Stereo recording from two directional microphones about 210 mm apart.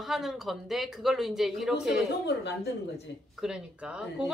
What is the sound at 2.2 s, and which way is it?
Speech, 55° left (ahead or behind).